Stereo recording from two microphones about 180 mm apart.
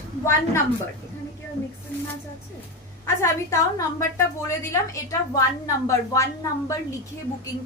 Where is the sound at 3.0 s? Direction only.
15° left (ahead or behind).